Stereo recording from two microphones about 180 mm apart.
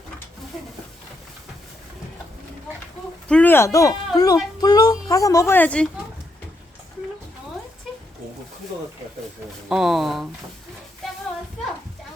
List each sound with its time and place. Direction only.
3.2 s speech: 10° left (ahead or behind)
9.6 s speech: 5° right (ahead or behind)